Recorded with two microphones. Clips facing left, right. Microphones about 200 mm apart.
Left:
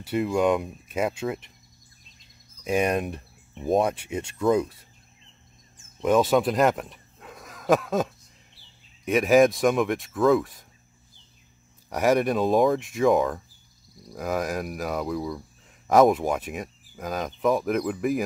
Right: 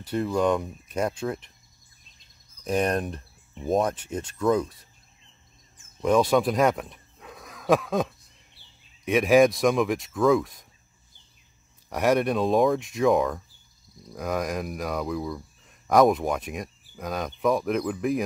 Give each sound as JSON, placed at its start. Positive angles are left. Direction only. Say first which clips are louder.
{"t": 0.0, "sound": "speech", "louder": "left 1 dB", "side_deg": 5}
{"t": 2.6, "sound": "speech", "louder": "left 1 dB", "side_deg": 10}
{"t": 5.9, "sound": "speech", "louder": "even", "side_deg": 0}
{"t": 11.9, "sound": "speech", "louder": "left 1 dB", "side_deg": 0}